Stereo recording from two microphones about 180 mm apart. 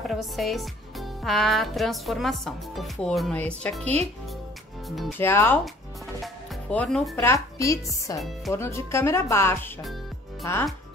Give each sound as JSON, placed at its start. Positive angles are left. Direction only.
{"t": 0.0, "sound": "speech", "side_deg": 0}
{"t": 5.2, "sound": "speech", "side_deg": 15}
{"t": 6.2, "sound": "music", "side_deg": 5}
{"t": 7.5, "sound": "speech", "side_deg": 20}